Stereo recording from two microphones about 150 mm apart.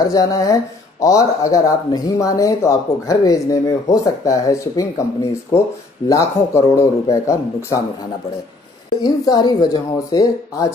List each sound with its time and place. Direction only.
0.0 s speech: 25° left (ahead or behind)
9.0 s speech: 25° left (ahead or behind)